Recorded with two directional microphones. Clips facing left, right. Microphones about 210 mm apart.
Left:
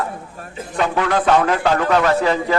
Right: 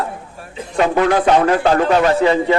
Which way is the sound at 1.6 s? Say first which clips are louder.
Right 3 dB; 30° right (ahead or behind).